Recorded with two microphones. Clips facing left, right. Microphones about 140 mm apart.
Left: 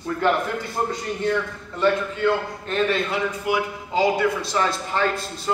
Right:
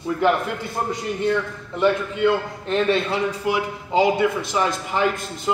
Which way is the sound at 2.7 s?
25° right (ahead or behind).